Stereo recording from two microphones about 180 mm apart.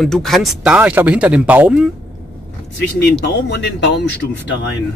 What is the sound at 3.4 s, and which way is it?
Speech, 75° left (ahead or behind).